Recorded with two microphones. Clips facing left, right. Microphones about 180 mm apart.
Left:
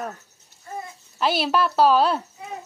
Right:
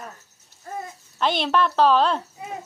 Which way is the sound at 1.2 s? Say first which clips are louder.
Even; 5° left (ahead or behind).